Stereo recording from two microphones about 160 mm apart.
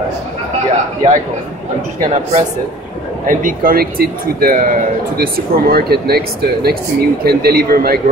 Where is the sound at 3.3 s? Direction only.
60° right (ahead or behind).